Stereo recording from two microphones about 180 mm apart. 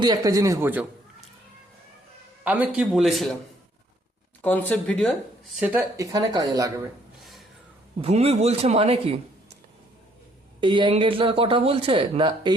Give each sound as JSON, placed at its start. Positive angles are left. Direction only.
{"t": 0.0, "sound": "speech", "side_deg": -20}
{"t": 2.4, "sound": "a man's voice", "side_deg": -10}
{"t": 4.4, "sound": "speech", "side_deg": 10}
{"t": 5.5, "sound": "speech", "side_deg": -5}
{"t": 6.0, "sound": "speech", "side_deg": -20}
{"t": 8.0, "sound": "a man's voice", "side_deg": -35}
{"t": 10.6, "sound": "speech", "side_deg": -25}